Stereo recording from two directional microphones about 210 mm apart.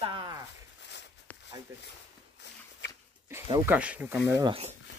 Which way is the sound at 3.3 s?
10° right (ahead or behind).